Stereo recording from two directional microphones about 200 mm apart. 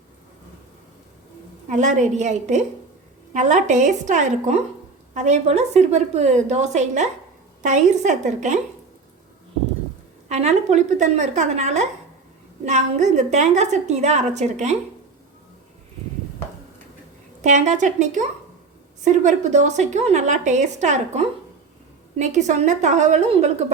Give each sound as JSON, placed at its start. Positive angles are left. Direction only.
{"t": 1.6, "sound": "a woman's voice", "side_deg": -40}
{"t": 10.2, "sound": "a woman's voice", "side_deg": -35}
{"t": 17.4, "sound": "a woman's voice", "side_deg": -35}